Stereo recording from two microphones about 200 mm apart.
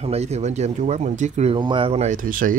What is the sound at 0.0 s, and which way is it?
Speech, 30° right (ahead or behind).